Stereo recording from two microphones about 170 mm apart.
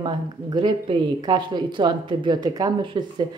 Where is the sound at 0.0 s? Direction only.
25° right (ahead or behind).